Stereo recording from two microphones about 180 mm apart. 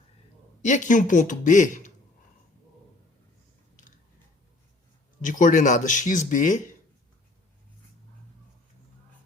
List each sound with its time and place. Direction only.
0.6 s speech: 45° left (ahead or behind)
5.2 s speech: 45° left (ahead or behind)